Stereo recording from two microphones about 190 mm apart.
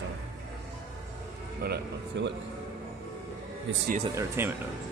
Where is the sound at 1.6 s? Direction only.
60° right (ahead or behind).